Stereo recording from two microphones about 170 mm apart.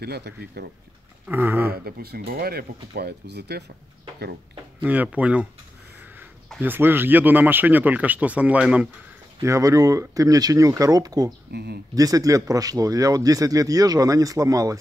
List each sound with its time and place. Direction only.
0.0 s speech: 75° right (ahead or behind)
1.2 s speech: 10° right (ahead or behind)
1.9 s speech: 60° right (ahead or behind)
4.8 s speech: 10° right (ahead or behind)
6.6 s speech: 10° right (ahead or behind)
9.4 s speech: 20° right (ahead or behind)
11.5 s speech: 75° right (ahead or behind)
11.9 s speech: 20° right (ahead or behind)